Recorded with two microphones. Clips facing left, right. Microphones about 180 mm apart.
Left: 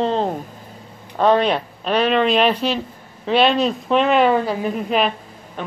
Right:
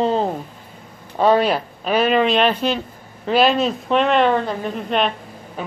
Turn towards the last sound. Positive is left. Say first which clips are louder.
# even
turn(degrees=-5)  # may be behind; listen again after turning